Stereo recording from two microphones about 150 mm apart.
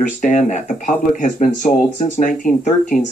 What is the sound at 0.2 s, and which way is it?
Speech, 50° left (ahead or behind).